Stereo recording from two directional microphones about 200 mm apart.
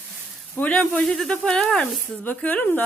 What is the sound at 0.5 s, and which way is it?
Speech, 5° left (ahead or behind).